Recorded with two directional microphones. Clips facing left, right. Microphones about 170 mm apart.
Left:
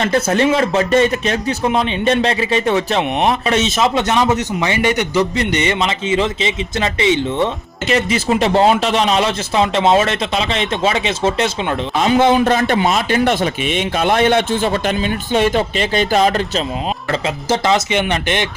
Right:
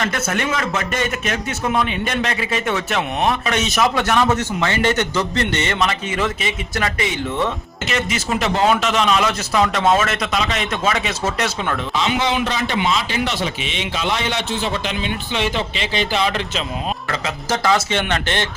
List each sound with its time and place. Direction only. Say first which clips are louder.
0.0 s a man's voice: left 7 dB; 30° left (ahead or behind)
11.9 s a man's voice: left 8 dB; 45° left (ahead or behind)
17.1 s a man's voice: left 7 dB; 30° left (ahead or behind)